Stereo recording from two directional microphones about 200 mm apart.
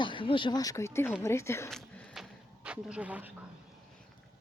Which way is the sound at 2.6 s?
5° right (ahead or behind).